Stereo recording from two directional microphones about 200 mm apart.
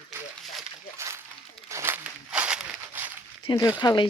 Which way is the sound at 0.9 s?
15° right (ahead or behind).